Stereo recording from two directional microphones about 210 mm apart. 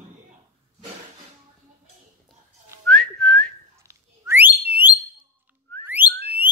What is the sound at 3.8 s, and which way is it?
Whistling, 15° right (ahead or behind).